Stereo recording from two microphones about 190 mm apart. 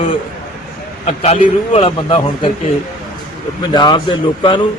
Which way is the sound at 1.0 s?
30° left (ahead or behind).